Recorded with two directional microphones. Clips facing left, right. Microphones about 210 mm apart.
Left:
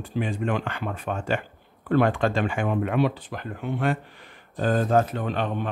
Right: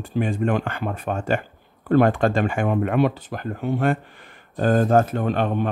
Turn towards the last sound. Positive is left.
turn(degrees=-45)  # may be behind; listen again after turning